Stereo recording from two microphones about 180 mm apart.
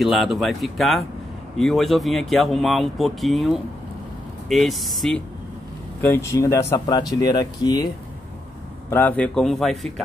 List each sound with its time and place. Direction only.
0.0 s speech: centre (ahead or behind)
5.9 s speech: 15° left (ahead or behind)
8.9 s speech: 10° left (ahead or behind)